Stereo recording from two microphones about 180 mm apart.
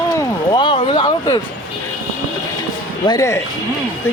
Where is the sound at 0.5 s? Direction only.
25° left (ahead or behind).